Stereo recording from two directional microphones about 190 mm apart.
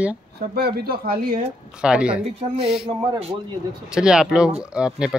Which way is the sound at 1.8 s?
5° right (ahead or behind).